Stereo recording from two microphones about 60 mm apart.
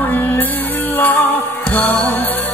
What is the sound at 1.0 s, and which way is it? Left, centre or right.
Music, left.